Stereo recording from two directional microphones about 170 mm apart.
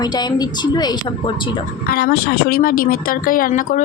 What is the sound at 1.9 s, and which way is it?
Speech, 65° left (ahead or behind).